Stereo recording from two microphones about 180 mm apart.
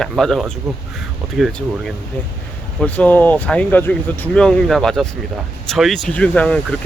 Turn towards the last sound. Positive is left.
turn(degrees=5)  # may be behind; listen again after turning